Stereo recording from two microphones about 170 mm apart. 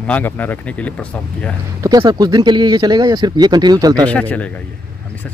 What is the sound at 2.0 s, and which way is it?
Speech, 25° right (ahead or behind).